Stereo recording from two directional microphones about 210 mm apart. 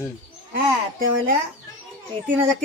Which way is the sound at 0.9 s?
45° right (ahead or behind).